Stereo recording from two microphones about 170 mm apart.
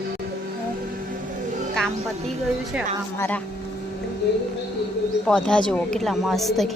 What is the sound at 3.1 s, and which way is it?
Speech, 10° left (ahead or behind).